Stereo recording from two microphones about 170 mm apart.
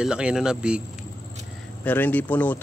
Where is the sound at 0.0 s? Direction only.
5° right (ahead or behind).